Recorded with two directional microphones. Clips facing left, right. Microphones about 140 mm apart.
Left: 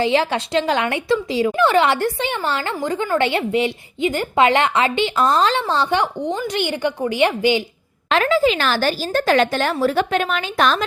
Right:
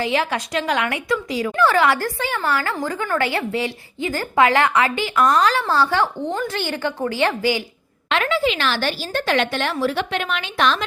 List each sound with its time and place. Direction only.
0.0 s a woman's voice: 30° left (ahead or behind)
8.1 s a woman's voice: 40° left (ahead or behind)